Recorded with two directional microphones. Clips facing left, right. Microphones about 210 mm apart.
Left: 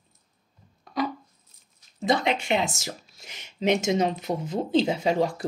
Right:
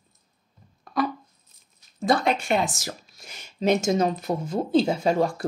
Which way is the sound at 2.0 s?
20° left (ahead or behind).